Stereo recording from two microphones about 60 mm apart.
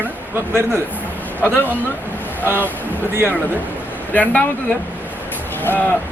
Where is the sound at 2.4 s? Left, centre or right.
Right.